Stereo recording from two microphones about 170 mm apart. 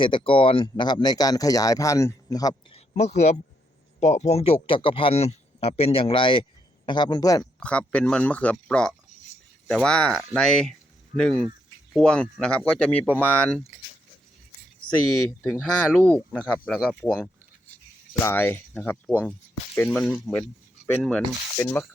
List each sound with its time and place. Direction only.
0.0 s speech: 30° left (ahead or behind)
2.7 s speech: 40° left (ahead or behind); by 7.4 s 20° left (ahead or behind)
7.6 s speech: 5° left (ahead or behind)
15.4 s speech: 5° left (ahead or behind)
18.2 s speech: 15° left (ahead or behind)
20.8 s rub: 10° left (ahead or behind)
21.6 s speech: 15° left (ahead or behind)